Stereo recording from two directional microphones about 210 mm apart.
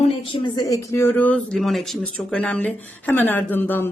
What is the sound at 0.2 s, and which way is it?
Speech, 20° left (ahead or behind).